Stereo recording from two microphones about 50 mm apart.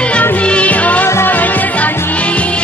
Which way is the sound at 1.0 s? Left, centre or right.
Left.